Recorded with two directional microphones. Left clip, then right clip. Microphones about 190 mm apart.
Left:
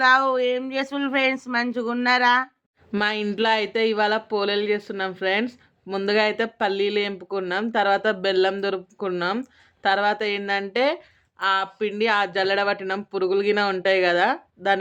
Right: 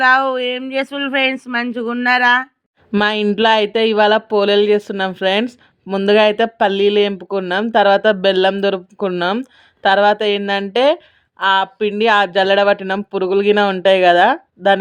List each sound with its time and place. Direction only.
0.0 s speech: 20° right (ahead or behind)
2.9 s speech: 35° right (ahead or behind)